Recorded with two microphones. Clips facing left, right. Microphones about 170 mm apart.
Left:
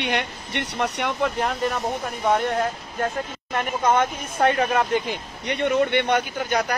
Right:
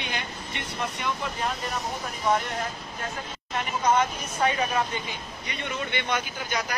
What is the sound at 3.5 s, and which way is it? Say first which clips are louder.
Speech: left 3 dB; 55° left (ahead or behind).